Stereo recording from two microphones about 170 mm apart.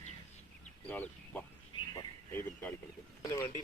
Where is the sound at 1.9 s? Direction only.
15° left (ahead or behind).